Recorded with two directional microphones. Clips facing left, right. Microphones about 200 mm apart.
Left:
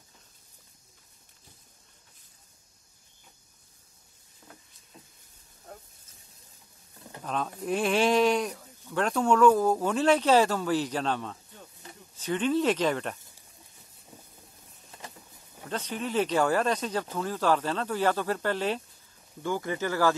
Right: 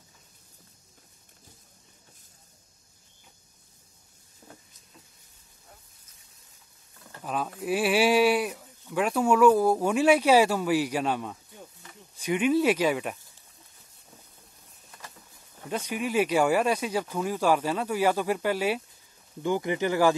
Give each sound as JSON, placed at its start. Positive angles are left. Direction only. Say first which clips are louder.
{"t": 7.2, "sound": "speech", "louder": "right 1 dB", "side_deg": -5}
{"t": 15.7, "sound": "speech", "louder": "right 2 dB", "side_deg": -10}